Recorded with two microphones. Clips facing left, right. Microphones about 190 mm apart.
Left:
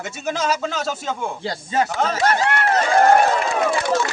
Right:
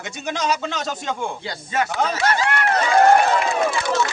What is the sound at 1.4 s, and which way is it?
Speech, 30° left (ahead or behind).